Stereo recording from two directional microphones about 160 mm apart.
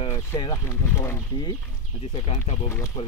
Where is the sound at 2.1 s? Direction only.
40° left (ahead or behind).